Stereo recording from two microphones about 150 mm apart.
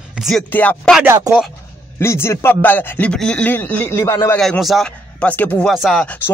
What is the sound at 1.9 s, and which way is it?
Speech, 15° left (ahead or behind).